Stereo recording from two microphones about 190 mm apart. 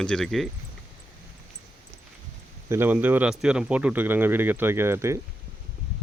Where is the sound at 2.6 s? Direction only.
10° right (ahead or behind).